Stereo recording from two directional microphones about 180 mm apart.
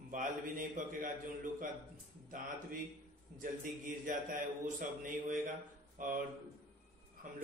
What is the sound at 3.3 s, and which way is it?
A man's voice, 45° right (ahead or behind).